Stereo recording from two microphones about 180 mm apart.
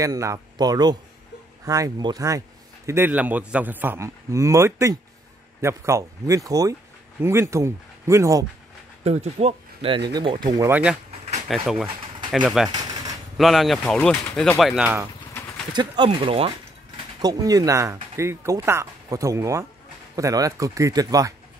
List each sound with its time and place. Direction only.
0.0 s speech: 15° right (ahead or behind)
9.0 s speech: 35° right (ahead or behind)
10.6 s speech: 10° right (ahead or behind)
12.6 s a sound: 20° right (ahead or behind)
13.4 s speech: centre (ahead or behind)
15.7 s speech: 25° right (ahead or behind)
17.2 s speech: 20° right (ahead or behind)